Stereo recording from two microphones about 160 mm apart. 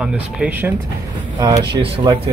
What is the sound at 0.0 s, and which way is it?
Speech, 10° right (ahead or behind).